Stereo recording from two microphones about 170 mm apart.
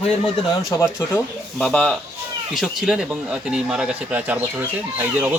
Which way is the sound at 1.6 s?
5° left (ahead or behind).